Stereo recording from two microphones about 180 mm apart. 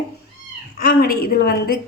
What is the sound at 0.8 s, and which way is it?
A woman's voice, 60° left (ahead or behind).